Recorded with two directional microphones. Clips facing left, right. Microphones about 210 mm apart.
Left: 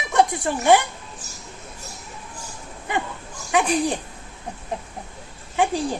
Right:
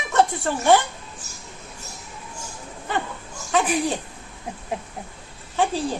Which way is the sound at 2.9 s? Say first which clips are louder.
Left 1 dB; 15° left (ahead or behind).